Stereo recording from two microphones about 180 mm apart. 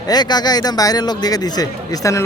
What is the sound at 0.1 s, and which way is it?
A man's voice, 25° left (ahead or behind).